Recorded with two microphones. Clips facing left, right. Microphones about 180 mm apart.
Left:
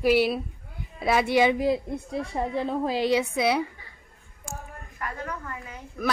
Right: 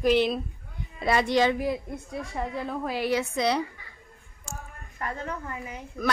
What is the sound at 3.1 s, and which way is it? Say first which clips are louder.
Speech: even; 10° left (ahead or behind).